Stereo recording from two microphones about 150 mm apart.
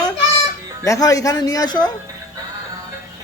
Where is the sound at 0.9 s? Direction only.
25° left (ahead or behind).